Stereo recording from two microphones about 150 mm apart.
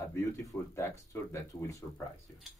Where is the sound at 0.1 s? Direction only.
20° left (ahead or behind).